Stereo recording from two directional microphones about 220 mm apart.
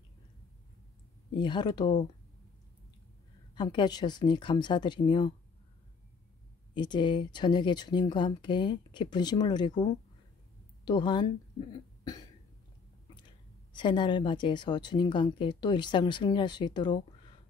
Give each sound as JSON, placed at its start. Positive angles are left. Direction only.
{"t": 1.3, "sound": "a woman's voice", "side_deg": 20}
{"t": 3.5, "sound": "a woman's voice", "side_deg": 20}
{"t": 6.7, "sound": "a woman's voice", "side_deg": 20}
{"t": 10.9, "sound": "a woman's voice", "side_deg": 20}
{"t": 12.0, "sound": "cough", "side_deg": 15}
{"t": 13.7, "sound": "a woman's voice", "side_deg": 20}